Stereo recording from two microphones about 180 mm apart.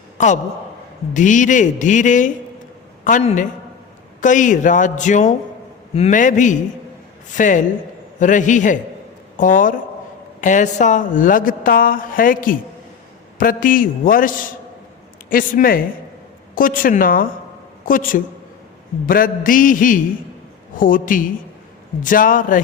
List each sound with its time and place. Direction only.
1.1 s a woman's voice: 45° left (ahead or behind)